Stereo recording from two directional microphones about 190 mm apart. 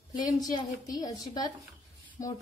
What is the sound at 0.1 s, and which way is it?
Speech, 20° left (ahead or behind).